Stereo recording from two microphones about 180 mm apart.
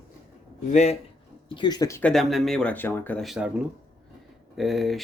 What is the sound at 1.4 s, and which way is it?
Speech, 25° left (ahead or behind).